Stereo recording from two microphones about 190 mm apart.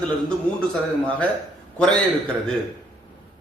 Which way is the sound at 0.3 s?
5° left (ahead or behind).